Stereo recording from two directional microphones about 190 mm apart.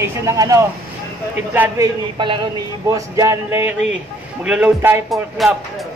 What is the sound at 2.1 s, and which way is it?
Speech, 25° right (ahead or behind).